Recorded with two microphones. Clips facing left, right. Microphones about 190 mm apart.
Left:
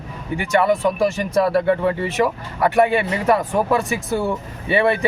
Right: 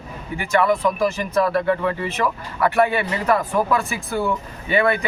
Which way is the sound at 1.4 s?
25° left (ahead or behind).